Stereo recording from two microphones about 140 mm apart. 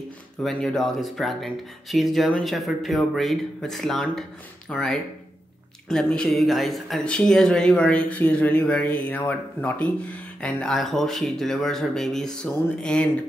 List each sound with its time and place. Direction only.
0.4 s speech: 5° left (ahead or behind)